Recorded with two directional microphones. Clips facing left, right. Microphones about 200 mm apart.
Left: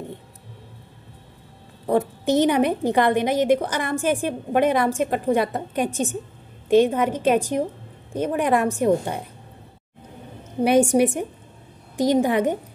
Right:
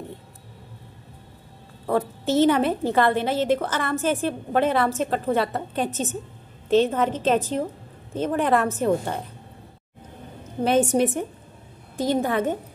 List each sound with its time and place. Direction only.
1.9 s a woman's voice: 15° left (ahead or behind)
10.6 s a woman's voice: 10° left (ahead or behind)